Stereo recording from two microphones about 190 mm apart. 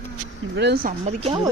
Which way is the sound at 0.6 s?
60° right (ahead or behind).